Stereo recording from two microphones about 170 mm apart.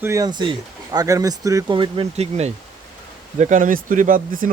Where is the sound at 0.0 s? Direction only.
20° right (ahead or behind).